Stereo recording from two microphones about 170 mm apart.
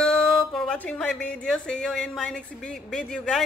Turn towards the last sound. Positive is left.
turn(degrees=5)  # may be behind; listen again after turning